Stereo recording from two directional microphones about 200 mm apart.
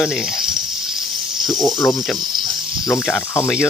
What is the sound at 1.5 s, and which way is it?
Speech, centre (ahead or behind).